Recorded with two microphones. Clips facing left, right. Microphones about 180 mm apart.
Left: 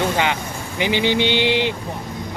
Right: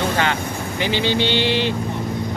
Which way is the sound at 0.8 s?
15° left (ahead or behind).